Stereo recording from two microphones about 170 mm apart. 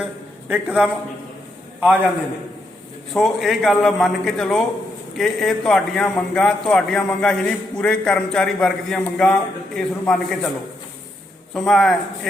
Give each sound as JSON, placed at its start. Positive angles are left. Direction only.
{"t": 0.0, "sound": "a sound", "side_deg": -10}
{"t": 3.1, "sound": "a man's voice", "side_deg": 0}
{"t": 11.5, "sound": "a man's voice", "side_deg": 0}